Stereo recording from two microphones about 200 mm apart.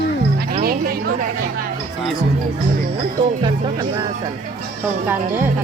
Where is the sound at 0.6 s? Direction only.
50° right (ahead or behind).